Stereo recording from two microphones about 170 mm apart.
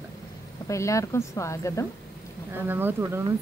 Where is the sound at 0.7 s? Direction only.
20° left (ahead or behind).